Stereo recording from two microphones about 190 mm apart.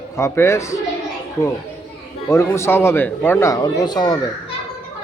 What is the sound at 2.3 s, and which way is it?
A man's voice, 15° left (ahead or behind).